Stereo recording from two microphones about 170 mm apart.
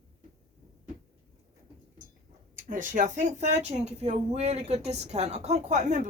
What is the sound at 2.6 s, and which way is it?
Speech, 50° right (ahead or behind).